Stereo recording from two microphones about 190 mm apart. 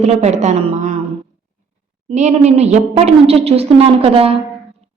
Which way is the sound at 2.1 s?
35° right (ahead or behind).